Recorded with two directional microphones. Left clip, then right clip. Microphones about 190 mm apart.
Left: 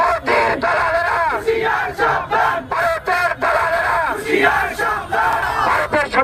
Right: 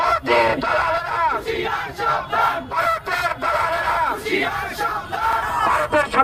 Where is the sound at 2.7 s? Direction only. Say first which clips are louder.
Left 3 dB; 35° right (ahead or behind).